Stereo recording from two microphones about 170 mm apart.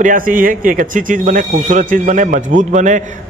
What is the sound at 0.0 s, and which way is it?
Speech, 55° right (ahead or behind).